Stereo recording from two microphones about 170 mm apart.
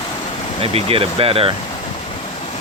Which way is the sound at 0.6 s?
35° right (ahead or behind).